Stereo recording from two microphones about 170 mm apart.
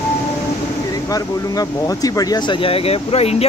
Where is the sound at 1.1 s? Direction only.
20° left (ahead or behind).